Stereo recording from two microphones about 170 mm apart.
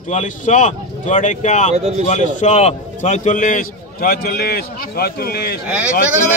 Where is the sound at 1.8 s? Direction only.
40° right (ahead or behind).